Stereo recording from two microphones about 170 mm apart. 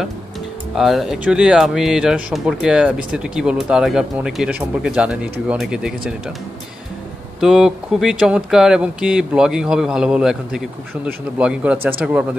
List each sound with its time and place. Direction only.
0.7 s speech: centre (ahead or behind)
7.3 s speech: 5° right (ahead or behind)